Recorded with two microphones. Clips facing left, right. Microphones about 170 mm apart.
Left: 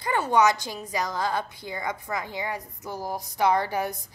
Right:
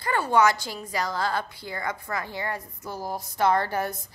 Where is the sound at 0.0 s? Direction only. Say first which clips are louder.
Even; 15° left (ahead or behind).